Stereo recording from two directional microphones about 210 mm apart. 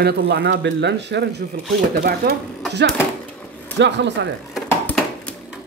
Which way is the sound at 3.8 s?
55° right (ahead or behind).